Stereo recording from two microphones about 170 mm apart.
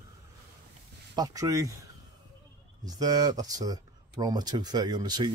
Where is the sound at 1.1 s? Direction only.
20° right (ahead or behind).